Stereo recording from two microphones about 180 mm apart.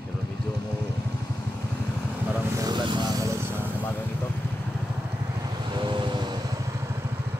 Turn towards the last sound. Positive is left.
turn(degrees=-25)  # may be behind; listen again after turning